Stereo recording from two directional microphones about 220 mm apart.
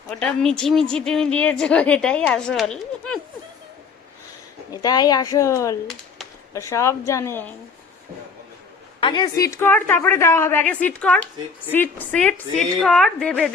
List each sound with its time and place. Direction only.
0.1 s a woman's voice: 5° left (ahead or behind)
4.7 s speech: 15° left (ahead or behind)
9.0 s a woman's voice: 20° left (ahead or behind); by 13.5 s 5° left (ahead or behind)